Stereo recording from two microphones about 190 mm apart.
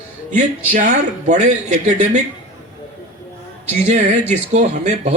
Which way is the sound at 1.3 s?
40° right (ahead or behind).